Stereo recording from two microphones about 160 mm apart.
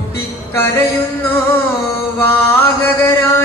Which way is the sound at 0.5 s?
15° left (ahead or behind).